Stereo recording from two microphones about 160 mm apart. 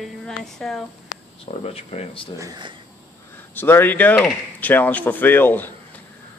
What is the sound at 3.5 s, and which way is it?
Speech, 10° left (ahead or behind).